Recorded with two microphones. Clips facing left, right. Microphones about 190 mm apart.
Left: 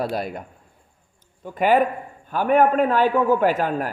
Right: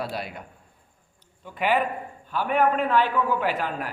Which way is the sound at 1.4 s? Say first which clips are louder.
Left 6 dB; 45° left (ahead or behind).